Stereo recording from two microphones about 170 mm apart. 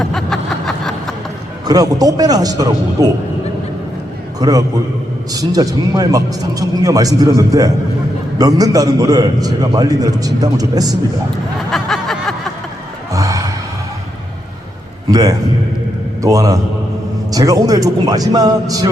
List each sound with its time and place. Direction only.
0.0 s a sound: 5° left (ahead or behind)
1.6 s a man's voice: 20° right (ahead or behind)
4.4 s a man's voice: 20° right (ahead or behind)
11.7 s snicker: centre (ahead or behind)
13.1 s sigh: 20° right (ahead or behind)
15.1 s a man's voice: 20° right (ahead or behind)